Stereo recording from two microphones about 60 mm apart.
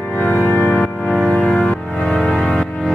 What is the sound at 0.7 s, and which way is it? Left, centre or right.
Music, centre.